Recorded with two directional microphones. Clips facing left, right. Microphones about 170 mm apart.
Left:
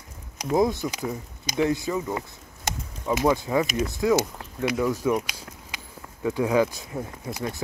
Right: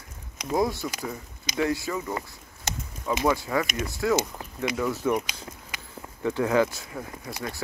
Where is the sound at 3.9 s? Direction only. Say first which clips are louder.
Even; 15° left (ahead or behind).